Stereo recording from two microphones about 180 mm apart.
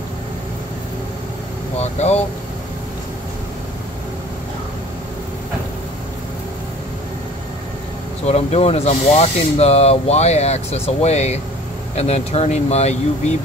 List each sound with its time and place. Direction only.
1.8 s speech: 35° left (ahead or behind)
8.3 s speech: 35° left (ahead or behind)